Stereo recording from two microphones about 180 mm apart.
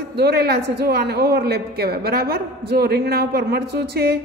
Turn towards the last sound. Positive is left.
turn(degrees=-60)  # may be behind; listen again after turning